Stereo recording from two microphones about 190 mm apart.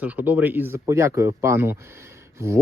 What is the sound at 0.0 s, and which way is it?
Speech, 10° right (ahead or behind).